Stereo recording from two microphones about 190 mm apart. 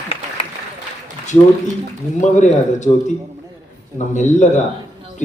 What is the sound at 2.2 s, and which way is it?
Speech, 40° left (ahead or behind).